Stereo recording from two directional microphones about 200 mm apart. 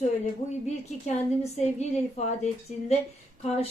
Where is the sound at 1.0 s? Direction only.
35° left (ahead or behind).